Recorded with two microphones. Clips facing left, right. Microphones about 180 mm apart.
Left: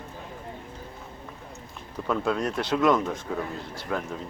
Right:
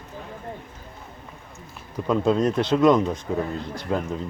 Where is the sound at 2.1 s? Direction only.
20° right (ahead or behind).